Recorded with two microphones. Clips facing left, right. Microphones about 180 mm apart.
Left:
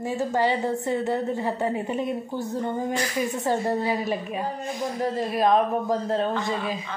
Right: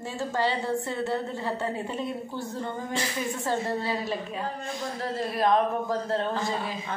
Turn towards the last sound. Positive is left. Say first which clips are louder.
# left 3 dB
turn(degrees=20)  # may be behind; listen again after turning